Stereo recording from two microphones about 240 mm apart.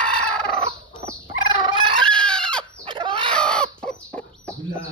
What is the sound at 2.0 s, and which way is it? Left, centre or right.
Chicken, centre.